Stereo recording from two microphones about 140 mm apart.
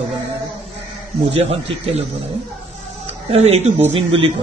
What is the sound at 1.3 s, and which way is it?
Speech, 45° right (ahead or behind).